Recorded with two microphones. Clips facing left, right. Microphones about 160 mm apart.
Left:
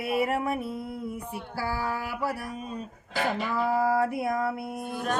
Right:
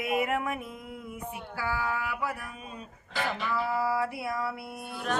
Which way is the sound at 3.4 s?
45° left (ahead or behind).